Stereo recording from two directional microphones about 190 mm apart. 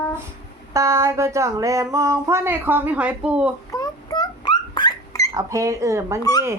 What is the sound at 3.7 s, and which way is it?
Dog, 20° left (ahead or behind).